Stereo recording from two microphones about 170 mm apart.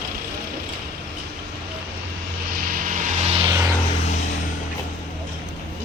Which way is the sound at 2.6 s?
50° right (ahead or behind).